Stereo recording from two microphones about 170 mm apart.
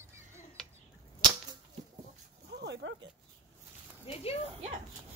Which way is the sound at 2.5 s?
85° right.